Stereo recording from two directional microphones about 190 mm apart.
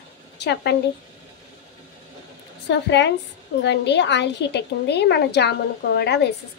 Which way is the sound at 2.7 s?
65° left (ahead or behind).